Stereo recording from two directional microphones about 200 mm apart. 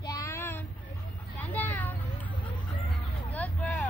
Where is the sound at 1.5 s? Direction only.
10° left (ahead or behind).